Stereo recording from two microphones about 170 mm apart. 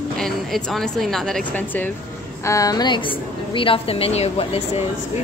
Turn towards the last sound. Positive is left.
turn(degrees=35)  # may be behind; listen again after turning